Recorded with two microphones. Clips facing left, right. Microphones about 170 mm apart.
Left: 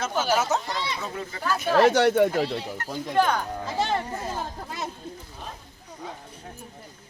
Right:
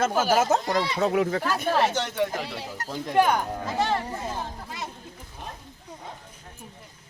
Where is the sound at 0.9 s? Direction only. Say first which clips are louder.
Right 11 dB; 70° right (ahead or behind).